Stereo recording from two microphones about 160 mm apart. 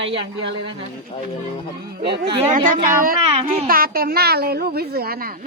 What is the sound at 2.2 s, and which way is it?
Speech, 35° right (ahead or behind).